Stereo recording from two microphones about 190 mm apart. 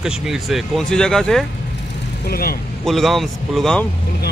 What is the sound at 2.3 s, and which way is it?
Speech, 50° left (ahead or behind).